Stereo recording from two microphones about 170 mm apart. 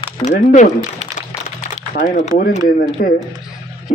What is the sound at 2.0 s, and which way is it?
A man's voice, 60° left (ahead or behind).